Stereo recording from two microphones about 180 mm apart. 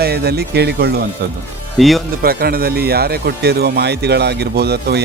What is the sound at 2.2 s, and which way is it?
Speech, 55° right (ahead or behind).